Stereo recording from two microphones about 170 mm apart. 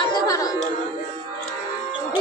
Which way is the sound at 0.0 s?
20° left (ahead or behind).